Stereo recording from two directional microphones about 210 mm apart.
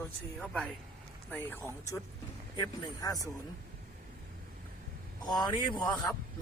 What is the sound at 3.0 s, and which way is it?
Speech, 15° left (ahead or behind).